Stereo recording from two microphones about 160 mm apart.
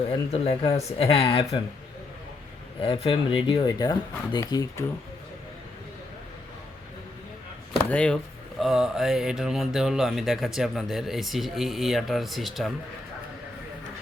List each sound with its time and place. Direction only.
0.1 s speech: 35° left (ahead or behind)
2.8 s speech: 35° left (ahead or behind)
7.9 s speech: 5° left (ahead or behind)